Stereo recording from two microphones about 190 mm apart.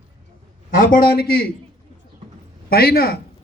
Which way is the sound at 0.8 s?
50° left (ahead or behind).